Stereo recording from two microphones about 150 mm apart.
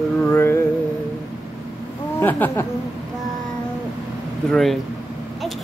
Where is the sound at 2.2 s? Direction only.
10° left (ahead or behind).